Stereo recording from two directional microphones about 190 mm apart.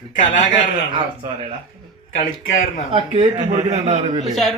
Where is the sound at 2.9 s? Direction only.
30° right (ahead or behind).